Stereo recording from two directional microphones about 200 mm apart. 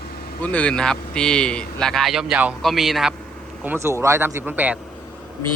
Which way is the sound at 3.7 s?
15° right (ahead or behind).